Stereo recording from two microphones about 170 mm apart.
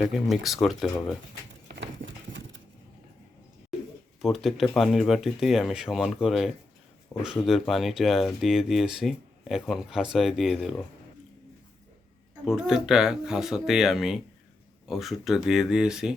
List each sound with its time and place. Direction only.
0.1 s speech: centre (ahead or behind)
1.6 s a sound: 80° right
4.2 s speech: centre (ahead or behind)
7.1 s speech: 15° left (ahead or behind)
7.4 s speech: centre (ahead or behind)
12.5 s speech: centre (ahead or behind)